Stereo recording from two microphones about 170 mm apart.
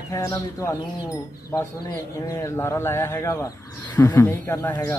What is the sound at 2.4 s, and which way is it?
Speech, 15° left (ahead or behind).